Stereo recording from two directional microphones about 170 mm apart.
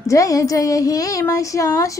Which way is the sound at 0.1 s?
20° left (ahead or behind).